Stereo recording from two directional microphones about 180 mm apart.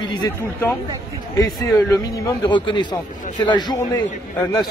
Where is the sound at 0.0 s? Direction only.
25° left (ahead or behind).